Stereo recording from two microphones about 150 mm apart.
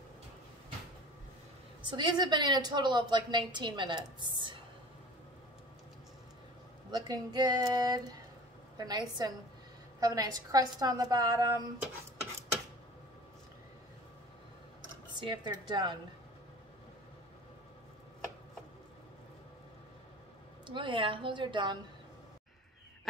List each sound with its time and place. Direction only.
1.9 s a woman's voice: 30° right (ahead or behind)
6.9 s a woman's voice: 25° right (ahead or behind)
15.1 s a woman's voice: 30° right (ahead or behind)
20.6 s a woman's voice: 35° right (ahead or behind)